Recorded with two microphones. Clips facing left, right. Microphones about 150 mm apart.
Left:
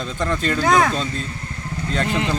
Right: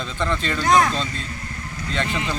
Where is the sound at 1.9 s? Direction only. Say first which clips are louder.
Left 3 dB; 40° left (ahead or behind).